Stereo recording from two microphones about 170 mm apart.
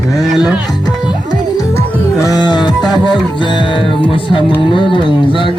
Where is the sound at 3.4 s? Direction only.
30° left (ahead or behind).